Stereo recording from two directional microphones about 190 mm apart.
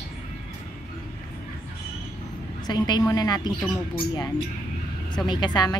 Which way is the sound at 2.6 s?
20° left (ahead or behind).